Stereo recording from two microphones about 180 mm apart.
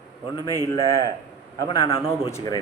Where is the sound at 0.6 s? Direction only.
20° left (ahead or behind).